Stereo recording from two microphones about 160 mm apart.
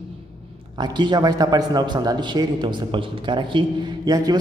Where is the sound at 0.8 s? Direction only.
25° right (ahead or behind).